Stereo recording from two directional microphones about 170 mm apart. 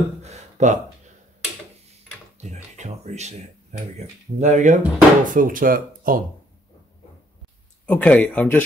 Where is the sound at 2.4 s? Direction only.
40° right (ahead or behind).